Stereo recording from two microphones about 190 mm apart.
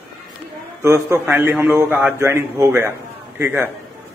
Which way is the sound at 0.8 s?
15° right (ahead or behind).